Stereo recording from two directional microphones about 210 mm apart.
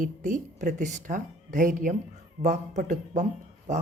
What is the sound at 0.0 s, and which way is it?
Speech, 35° right (ahead or behind).